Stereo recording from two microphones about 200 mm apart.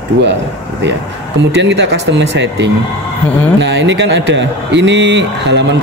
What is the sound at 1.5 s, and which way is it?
Speech, 60° right (ahead or behind).